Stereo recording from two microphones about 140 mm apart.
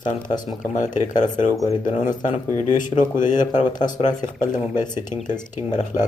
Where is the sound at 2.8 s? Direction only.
65° left (ahead or behind).